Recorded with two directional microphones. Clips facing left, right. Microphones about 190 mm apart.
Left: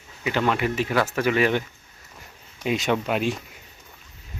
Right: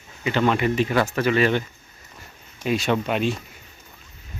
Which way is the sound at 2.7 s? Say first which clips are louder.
Right 1 dB; 15° left (ahead or behind).